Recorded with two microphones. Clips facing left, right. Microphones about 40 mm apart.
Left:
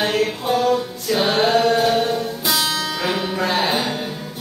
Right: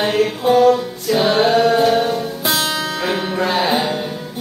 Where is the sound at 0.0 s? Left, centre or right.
Centre.